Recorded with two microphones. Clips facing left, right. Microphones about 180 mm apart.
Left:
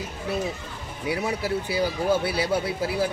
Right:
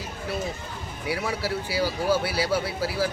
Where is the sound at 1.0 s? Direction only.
20° left (ahead or behind).